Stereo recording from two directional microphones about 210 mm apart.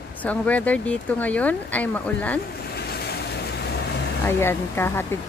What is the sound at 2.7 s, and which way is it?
Vehicle, 50° left (ahead or behind).